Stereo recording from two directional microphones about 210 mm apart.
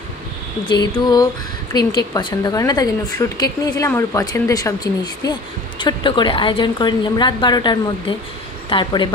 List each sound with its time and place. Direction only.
0.7 s speech: 20° left (ahead or behind)